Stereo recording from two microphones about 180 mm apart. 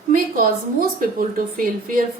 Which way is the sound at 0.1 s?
55° right (ahead or behind).